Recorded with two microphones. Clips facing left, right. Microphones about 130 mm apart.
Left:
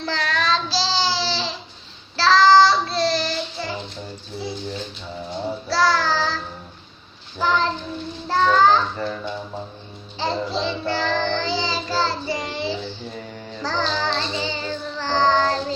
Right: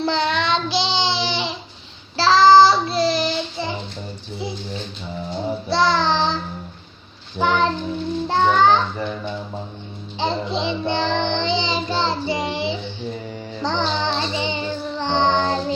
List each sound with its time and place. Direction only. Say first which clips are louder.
0.0 s child singing: right 4 dB; 25° right (ahead or behind)
5.5 s child singing: right 1 dB; 20° right (ahead or behind)
8.3 s children playing: even; 20° right (ahead or behind)
10.2 s child singing: right 1 dB; 20° right (ahead or behind)